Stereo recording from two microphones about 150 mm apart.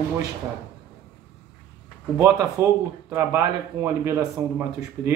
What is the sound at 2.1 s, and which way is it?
Speech, 15° right (ahead or behind).